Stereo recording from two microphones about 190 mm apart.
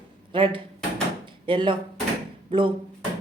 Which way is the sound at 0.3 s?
25° right (ahead or behind).